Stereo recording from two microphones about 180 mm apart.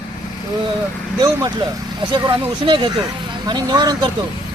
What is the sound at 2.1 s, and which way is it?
A man's voice, 25° right (ahead or behind).